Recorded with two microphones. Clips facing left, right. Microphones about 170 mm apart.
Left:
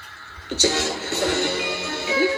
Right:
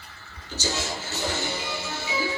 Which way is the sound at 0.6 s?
70° left (ahead or behind).